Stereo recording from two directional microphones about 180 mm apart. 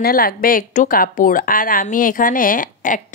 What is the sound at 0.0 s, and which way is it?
A woman's voice, 55° left (ahead or behind).